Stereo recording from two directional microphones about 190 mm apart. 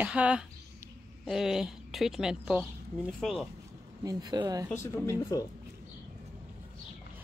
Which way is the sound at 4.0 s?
20° right (ahead or behind).